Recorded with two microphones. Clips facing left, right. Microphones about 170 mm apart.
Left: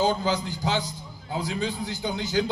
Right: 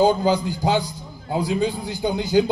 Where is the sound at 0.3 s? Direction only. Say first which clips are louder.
Right 6 dB; 10° right (ahead or behind).